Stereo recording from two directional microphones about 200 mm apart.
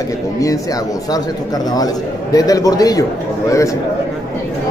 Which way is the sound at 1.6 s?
20° left (ahead or behind).